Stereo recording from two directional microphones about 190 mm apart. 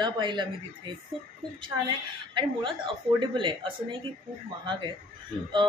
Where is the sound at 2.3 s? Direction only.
25° right (ahead or behind).